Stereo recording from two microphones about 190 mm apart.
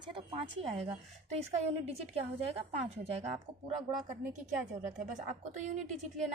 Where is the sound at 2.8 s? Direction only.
30° right (ahead or behind).